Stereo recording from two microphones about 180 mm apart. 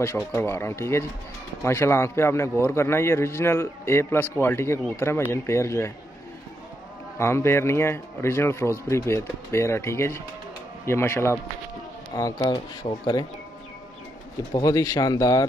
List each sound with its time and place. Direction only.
0.0 s a man's voice: 15° left (ahead or behind)
7.2 s a man's voice: 15° left (ahead or behind)
14.5 s speech: 20° left (ahead or behind)